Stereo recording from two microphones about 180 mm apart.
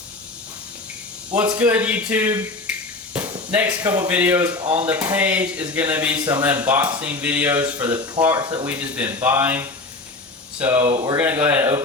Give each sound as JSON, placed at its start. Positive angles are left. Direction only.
{"t": 1.4, "sound": "speech", "side_deg": -10}
{"t": 2.6, "sound": "finger snapping", "side_deg": -10}
{"t": 4.9, "sound": "speech", "side_deg": -10}
{"t": 8.6, "sound": "speech", "side_deg": -10}